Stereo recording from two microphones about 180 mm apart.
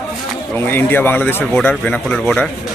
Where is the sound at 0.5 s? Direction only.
10° left (ahead or behind).